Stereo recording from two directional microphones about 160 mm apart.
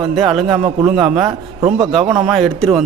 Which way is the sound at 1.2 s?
25° right (ahead or behind).